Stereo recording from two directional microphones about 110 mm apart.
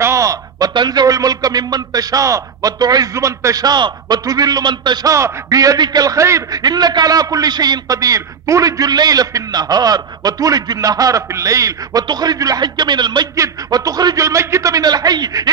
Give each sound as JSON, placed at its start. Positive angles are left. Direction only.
{"t": 0.0, "sound": "a sound", "side_deg": -30}
{"t": 0.7, "sound": "a man's voice", "side_deg": -40}
{"t": 5.1, "sound": "a man's voice", "side_deg": -30}
{"t": 6.6, "sound": "a man's voice", "side_deg": -40}